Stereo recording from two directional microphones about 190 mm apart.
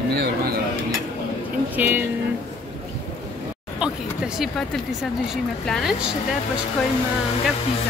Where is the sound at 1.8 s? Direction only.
10° right (ahead or behind).